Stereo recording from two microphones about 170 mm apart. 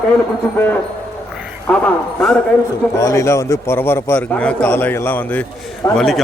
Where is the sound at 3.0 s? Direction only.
20° left (ahead or behind).